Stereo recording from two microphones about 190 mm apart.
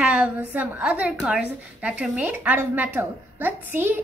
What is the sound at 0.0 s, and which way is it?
A woman's voice, 5° right (ahead or behind).